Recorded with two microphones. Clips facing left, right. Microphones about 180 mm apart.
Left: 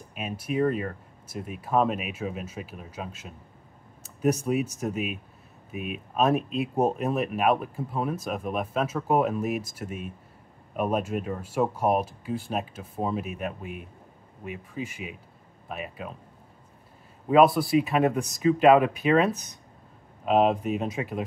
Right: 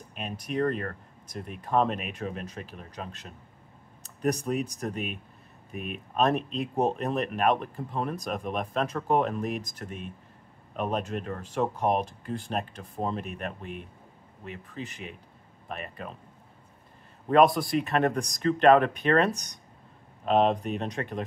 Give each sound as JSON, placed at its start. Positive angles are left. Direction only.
{"t": 0.1, "sound": "speech", "side_deg": 5}
{"t": 17.3, "sound": "speech", "side_deg": 5}